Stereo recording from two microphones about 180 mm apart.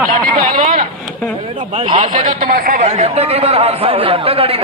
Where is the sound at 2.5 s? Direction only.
55° right (ahead or behind).